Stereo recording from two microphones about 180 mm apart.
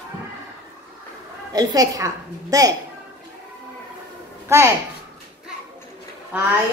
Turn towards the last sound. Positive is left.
turn(degrees=-10)  # may be behind; listen again after turning